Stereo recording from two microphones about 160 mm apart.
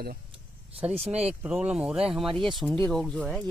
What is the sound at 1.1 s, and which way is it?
Speech, 5° right (ahead or behind).